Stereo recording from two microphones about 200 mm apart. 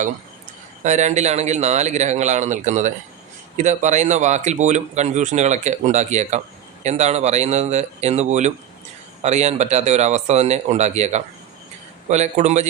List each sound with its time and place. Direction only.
0.8 s speech: 35° right (ahead or behind)